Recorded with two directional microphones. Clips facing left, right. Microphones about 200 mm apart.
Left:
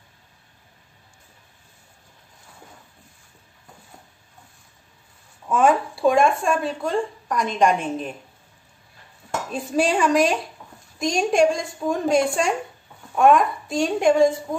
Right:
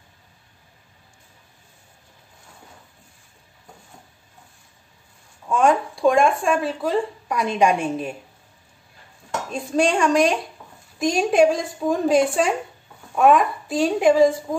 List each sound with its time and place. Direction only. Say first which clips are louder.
5.5 s speech: even; 5° left (ahead or behind)
9.5 s speech: right 1 dB; 5° left (ahead or behind)